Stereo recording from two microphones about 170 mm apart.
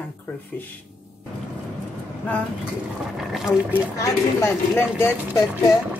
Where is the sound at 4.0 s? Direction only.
15° left (ahead or behind).